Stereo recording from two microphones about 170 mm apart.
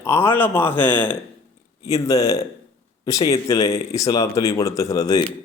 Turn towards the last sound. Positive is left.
turn(degrees=20)  # may be behind; listen again after turning